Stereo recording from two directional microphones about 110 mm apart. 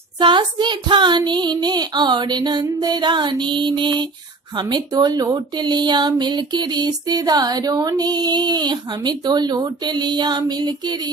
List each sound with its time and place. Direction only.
0.2 s child singing: 45° right (ahead or behind)
4.6 s speech: 45° right (ahead or behind)